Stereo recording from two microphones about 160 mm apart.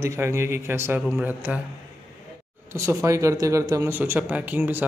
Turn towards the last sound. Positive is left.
turn(degrees=-10)  # may be behind; listen again after turning